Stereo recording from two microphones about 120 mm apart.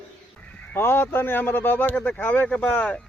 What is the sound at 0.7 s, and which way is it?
Speech, 20° left (ahead or behind).